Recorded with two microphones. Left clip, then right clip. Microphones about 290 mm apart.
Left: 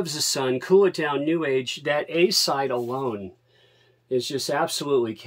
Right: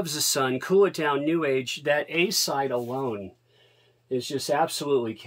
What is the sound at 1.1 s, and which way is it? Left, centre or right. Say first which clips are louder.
Speech: left 1 dB; right.